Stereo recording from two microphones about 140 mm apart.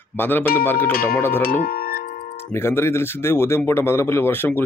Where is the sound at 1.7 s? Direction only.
90° left.